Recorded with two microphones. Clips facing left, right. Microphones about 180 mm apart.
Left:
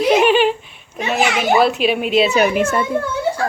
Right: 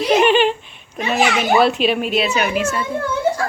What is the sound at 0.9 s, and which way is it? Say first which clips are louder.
A child's voice: even; 5° left (ahead or behind).